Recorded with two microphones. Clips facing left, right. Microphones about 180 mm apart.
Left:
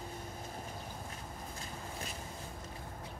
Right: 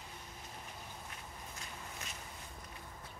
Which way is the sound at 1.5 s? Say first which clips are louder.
Left 4 dB; 30° left (ahead or behind).